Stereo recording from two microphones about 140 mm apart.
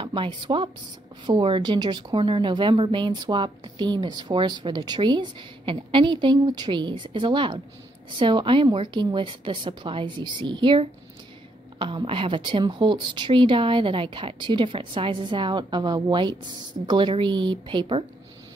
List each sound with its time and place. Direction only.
0.0 s a woman's voice: 35° right (ahead or behind)